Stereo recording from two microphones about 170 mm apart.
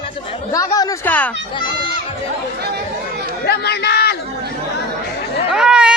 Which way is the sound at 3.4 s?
70° left (ahead or behind).